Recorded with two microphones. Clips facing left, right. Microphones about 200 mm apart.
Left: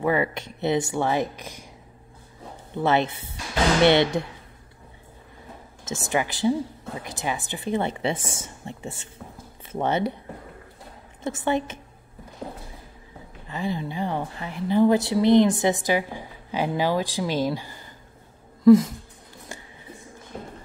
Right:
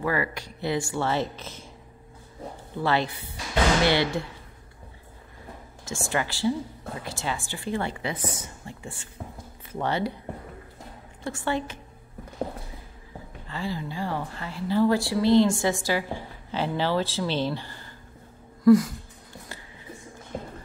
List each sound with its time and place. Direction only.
0.0 s a woman's voice: 20° left (ahead or behind)
2.8 s a woman's voice: 20° left (ahead or behind)
5.9 s a woman's voice: 20° left (ahead or behind)
11.2 s a woman's voice: 20° left (ahead or behind)
13.5 s a woman's voice: 20° left (ahead or behind)
18.6 s a sound: 25° left (ahead or behind)